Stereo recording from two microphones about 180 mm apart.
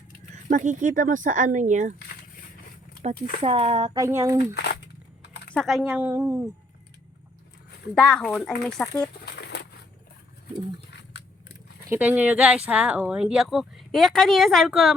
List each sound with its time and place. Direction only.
0.5 s speech: 45° right (ahead or behind)
3.0 s speech: 35° right (ahead or behind)
4.0 s a woman's voice: 15° right (ahead or behind)
4.5 s a sound: 65° left (ahead or behind)
5.5 s a woman's voice: centre (ahead or behind)
7.9 s speech: 5° left (ahead or behind)
9.2 s a sound: 65° left (ahead or behind)
11.9 s speech: 10° right (ahead or behind)